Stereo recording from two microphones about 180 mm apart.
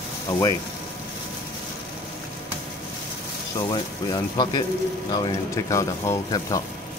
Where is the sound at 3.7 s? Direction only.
25° left (ahead or behind).